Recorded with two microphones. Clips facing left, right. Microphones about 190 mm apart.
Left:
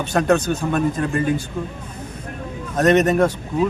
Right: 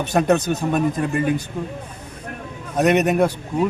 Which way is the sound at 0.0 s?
20° right (ahead or behind).